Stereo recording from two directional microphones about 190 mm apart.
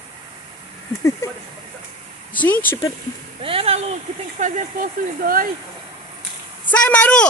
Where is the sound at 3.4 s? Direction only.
30° right (ahead or behind); by 5.5 s 45° right (ahead or behind).